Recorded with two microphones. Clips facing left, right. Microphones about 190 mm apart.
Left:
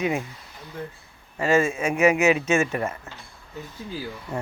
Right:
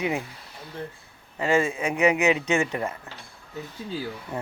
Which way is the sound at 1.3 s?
15° right (ahead or behind).